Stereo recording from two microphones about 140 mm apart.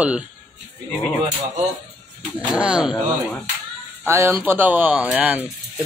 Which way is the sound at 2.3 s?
10° right (ahead or behind).